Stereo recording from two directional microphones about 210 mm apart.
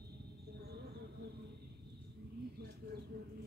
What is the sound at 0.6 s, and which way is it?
Insect, 50° right (ahead or behind).